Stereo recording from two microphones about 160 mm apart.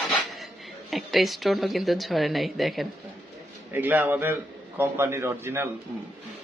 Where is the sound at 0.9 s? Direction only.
Centre (ahead or behind).